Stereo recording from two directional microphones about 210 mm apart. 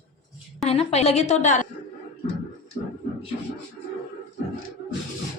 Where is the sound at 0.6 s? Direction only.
30° left (ahead or behind).